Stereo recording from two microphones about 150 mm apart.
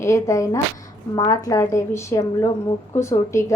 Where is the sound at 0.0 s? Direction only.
20° left (ahead or behind).